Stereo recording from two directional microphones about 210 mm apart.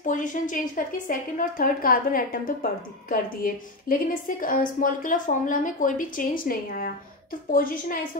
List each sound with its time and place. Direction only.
0.0 s a woman's voice: 40° left (ahead or behind)